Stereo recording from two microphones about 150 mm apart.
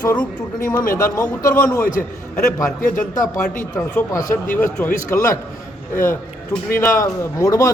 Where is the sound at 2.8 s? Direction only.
65° left (ahead or behind).